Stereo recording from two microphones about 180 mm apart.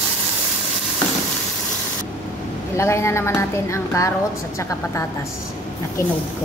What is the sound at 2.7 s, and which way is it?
A woman's voice, 15° left (ahead or behind).